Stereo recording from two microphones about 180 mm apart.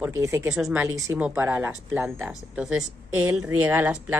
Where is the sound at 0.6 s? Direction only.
Centre (ahead or behind).